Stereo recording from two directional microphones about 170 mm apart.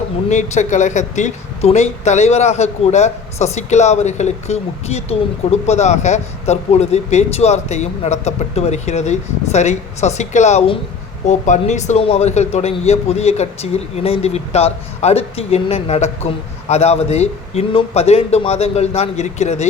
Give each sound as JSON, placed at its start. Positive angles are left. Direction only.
{"t": 0.3, "sound": "speech", "side_deg": 45}